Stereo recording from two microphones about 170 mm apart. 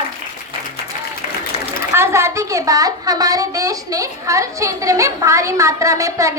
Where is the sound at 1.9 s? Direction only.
15° right (ahead or behind).